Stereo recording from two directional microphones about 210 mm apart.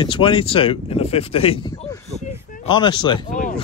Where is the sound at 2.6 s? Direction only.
20° left (ahead or behind).